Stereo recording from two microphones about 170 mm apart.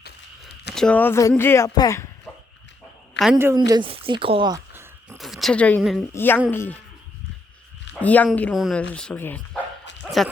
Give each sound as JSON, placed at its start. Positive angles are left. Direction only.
{"t": 0.0, "sound": "a sound", "side_deg": 75}
{"t": 0.7, "sound": "speech", "side_deg": 5}
{"t": 3.3, "sound": "a woman's voice", "side_deg": -15}
{"t": 3.7, "sound": "speech", "side_deg": -30}
{"t": 4.7, "sound": "a sound", "side_deg": -15}
{"t": 5.1, "sound": "speech", "side_deg": 0}
{"t": 7.9, "sound": "speech", "side_deg": 10}
{"t": 10.0, "sound": "dog", "side_deg": 0}